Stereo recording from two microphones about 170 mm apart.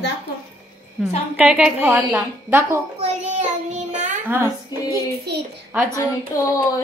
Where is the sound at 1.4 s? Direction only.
5° right (ahead or behind).